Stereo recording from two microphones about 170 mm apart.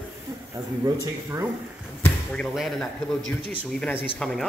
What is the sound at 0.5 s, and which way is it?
Speech, 20° right (ahead or behind).